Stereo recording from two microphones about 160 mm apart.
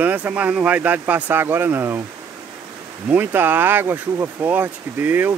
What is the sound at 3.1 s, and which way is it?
Speech, 15° right (ahead or behind).